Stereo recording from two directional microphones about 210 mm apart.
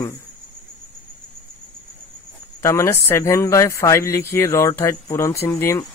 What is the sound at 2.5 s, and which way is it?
Speech, 15° left (ahead or behind).